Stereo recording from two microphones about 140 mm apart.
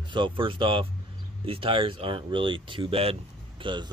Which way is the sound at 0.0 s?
35° right (ahead or behind).